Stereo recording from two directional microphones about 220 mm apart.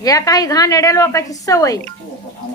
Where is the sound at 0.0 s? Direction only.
15° left (ahead or behind).